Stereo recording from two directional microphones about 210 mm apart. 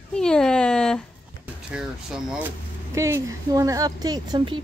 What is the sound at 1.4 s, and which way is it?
A child's voice, 5° right (ahead or behind).